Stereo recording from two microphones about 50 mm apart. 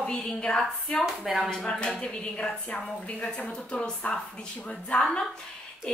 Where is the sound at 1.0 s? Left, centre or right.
Centre.